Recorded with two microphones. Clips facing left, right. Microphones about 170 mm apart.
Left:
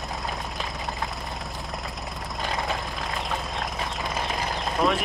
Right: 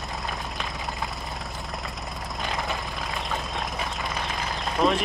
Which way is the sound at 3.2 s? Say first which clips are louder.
Even; centre (ahead or behind).